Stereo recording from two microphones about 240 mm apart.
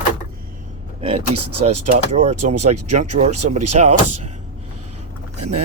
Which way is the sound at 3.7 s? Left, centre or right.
Right.